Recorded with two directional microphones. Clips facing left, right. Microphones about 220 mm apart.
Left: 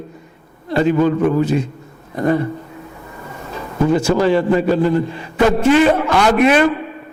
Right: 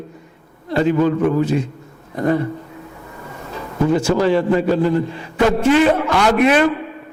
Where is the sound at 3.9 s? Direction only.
15° left (ahead or behind).